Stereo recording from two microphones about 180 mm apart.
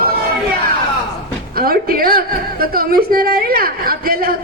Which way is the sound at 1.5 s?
55° right (ahead or behind).